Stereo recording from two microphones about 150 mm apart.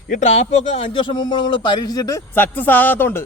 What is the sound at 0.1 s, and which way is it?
A man's voice, 50° left (ahead or behind).